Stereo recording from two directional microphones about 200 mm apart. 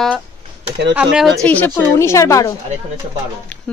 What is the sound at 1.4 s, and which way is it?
A woman's voice, 10° left (ahead or behind).